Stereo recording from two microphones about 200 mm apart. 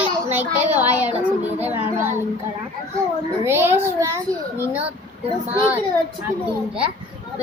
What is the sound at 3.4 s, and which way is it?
A child's voice, 10° right (ahead or behind).